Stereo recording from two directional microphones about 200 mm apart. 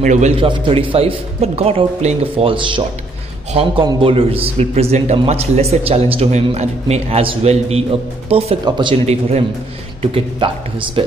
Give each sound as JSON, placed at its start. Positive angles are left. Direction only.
{"t": 0.0, "sound": "a man's voice", "side_deg": -35}